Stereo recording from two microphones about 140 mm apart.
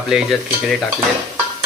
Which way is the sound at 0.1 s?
Centre (ahead or behind).